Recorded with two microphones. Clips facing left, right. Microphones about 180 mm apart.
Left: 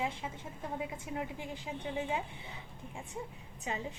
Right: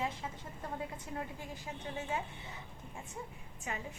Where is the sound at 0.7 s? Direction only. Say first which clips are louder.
Left 3 dB; 15° left (ahead or behind).